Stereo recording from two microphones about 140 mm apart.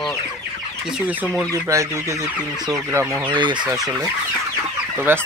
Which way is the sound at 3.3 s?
35° right (ahead or behind).